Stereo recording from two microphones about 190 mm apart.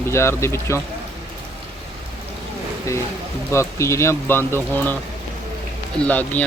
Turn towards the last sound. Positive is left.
turn(degrees=10)  # may be behind; listen again after turning